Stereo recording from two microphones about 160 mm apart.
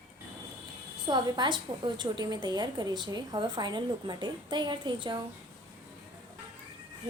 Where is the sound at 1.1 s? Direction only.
30° right (ahead or behind).